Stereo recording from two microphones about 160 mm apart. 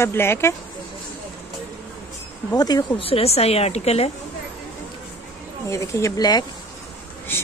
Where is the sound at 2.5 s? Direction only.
25° left (ahead or behind).